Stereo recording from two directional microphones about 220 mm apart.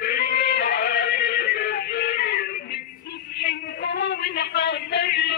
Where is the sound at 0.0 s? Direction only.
45° left (ahead or behind).